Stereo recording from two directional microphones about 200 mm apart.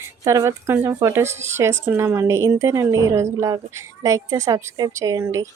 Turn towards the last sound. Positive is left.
turn(degrees=-15)  # may be behind; listen again after turning